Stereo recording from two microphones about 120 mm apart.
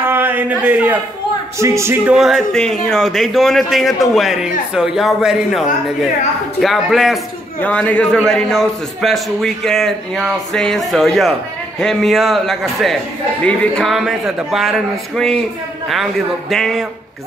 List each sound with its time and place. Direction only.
0.0 s a sound: 15° right (ahead or behind)
1.6 s speech: 25° right (ahead or behind)
2.0 s speech: 5° right (ahead or behind)
7.6 s a man's voice: 10° left (ahead or behind)